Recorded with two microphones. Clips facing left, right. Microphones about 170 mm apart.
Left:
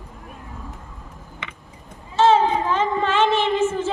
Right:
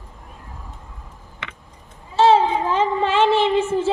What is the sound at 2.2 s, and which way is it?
Child singing, 35° right (ahead or behind).